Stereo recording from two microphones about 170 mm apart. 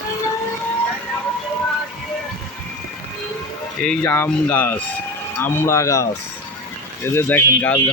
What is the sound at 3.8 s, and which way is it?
Speech, 10° left (ahead or behind).